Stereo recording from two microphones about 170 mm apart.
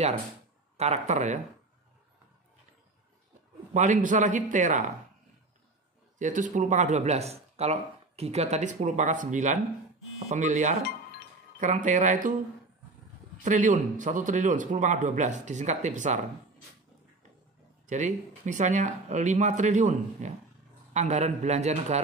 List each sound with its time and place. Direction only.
0.7 s speech: 40° right (ahead or behind)
3.7 s speech: 45° right (ahead or behind)
6.1 s speech: 45° right (ahead or behind)
13.4 s speech: 45° right (ahead or behind)
17.8 s a man's voice: 45° right (ahead or behind)